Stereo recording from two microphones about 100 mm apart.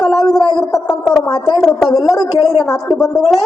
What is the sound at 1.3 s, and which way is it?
Speech, 45° left (ahead or behind).